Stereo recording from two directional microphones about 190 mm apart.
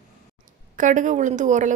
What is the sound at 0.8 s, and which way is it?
Speech, 40° right (ahead or behind).